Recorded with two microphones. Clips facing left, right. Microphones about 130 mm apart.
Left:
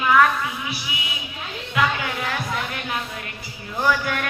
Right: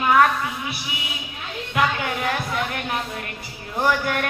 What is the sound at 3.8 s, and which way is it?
Speech, 45° right (ahead or behind).